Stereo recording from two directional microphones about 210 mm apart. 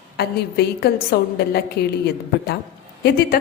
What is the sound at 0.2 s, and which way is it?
A woman's voice, 50° left (ahead or behind).